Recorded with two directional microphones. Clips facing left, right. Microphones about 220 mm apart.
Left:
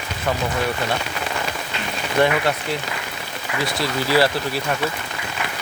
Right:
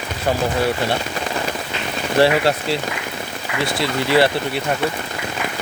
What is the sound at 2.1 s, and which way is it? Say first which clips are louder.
Speech: right 3 dB; 35° right (ahead or behind).